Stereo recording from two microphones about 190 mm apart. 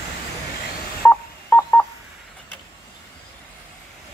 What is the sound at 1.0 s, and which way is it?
Telephone dialing, 10° left (ahead or behind).